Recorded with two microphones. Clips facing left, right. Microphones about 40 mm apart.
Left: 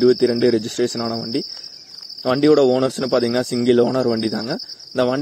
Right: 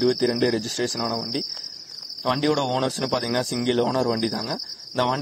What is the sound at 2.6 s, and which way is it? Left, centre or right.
Speech, right.